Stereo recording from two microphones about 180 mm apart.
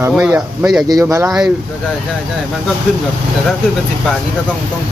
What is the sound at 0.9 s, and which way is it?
Speech, 20° right (ahead or behind).